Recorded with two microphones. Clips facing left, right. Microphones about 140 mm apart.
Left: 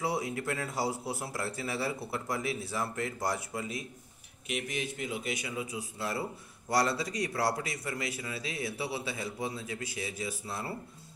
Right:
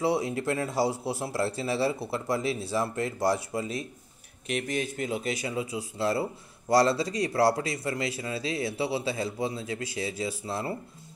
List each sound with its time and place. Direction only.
0.0 s a man's voice: 30° right (ahead or behind)
4.6 s a man's voice: 40° right (ahead or behind)